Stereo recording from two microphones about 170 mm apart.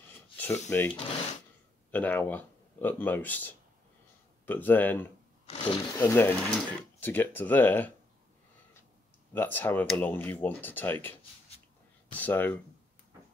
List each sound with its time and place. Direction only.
0.4 s speech: 15° left (ahead or behind)
5.5 s a sound: 30° left (ahead or behind)
5.9 s speech: 15° left (ahead or behind)
9.3 s speech: 10° left (ahead or behind)